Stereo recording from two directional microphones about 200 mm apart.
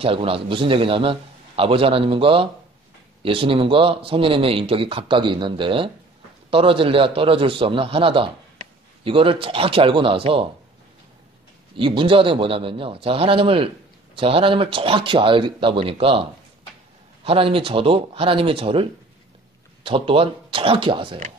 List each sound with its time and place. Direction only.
0.0 s speech: 25° right (ahead or behind)
11.7 s speech: 25° right (ahead or behind)